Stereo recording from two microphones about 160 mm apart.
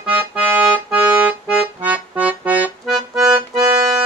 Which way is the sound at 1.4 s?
10° right (ahead or behind).